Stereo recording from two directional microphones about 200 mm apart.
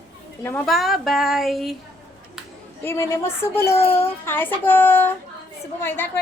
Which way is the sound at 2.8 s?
10° left (ahead or behind).